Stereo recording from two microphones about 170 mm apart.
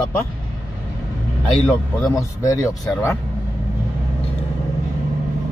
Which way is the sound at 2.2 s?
20° left (ahead or behind).